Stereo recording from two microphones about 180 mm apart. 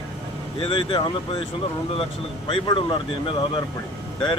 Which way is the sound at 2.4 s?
30° left (ahead or behind).